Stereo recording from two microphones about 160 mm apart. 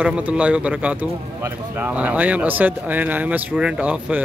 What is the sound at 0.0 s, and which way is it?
A man's voice, 5° right (ahead or behind).